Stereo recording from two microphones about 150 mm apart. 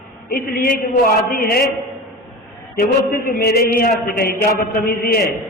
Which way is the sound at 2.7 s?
80° left.